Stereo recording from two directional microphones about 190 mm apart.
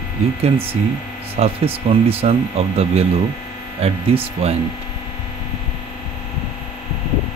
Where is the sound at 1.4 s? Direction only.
30° right (ahead or behind).